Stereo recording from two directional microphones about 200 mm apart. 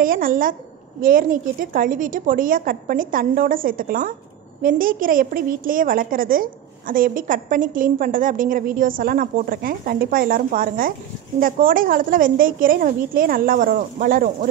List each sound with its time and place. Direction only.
0.0 s a woman's voice: 45° right (ahead or behind)